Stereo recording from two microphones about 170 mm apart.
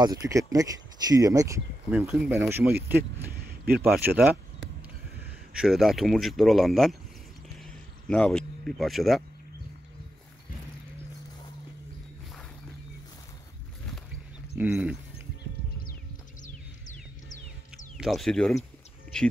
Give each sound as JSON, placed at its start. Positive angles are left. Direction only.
{"t": 0.0, "sound": "speech", "side_deg": -20}
{"t": 1.9, "sound": "speech", "side_deg": -5}
{"t": 3.0, "sound": "a sound", "side_deg": -65}
{"t": 3.7, "sound": "speech", "side_deg": -10}
{"t": 5.6, "sound": "speech", "side_deg": 0}
{"t": 7.5, "sound": "a sound", "side_deg": 5}
{"t": 14.6, "sound": "speech", "side_deg": -5}
{"t": 16.4, "sound": "music", "side_deg": 50}
{"t": 17.9, "sound": "speech", "side_deg": 0}